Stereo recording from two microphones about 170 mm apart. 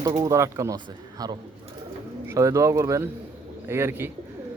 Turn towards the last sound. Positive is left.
turn(degrees=-15)  # may be behind; listen again after turning